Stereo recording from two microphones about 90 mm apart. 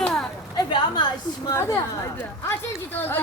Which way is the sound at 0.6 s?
60° left (ahead or behind).